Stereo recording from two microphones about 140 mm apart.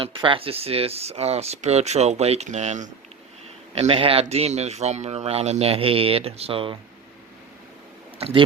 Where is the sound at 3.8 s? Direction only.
40° right (ahead or behind).